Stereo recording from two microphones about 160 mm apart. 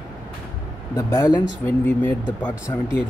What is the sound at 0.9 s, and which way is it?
Speech, 20° left (ahead or behind).